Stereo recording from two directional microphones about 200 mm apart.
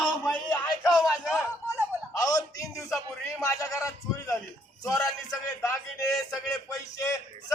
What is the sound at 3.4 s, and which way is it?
A man's voice, 15° left (ahead or behind).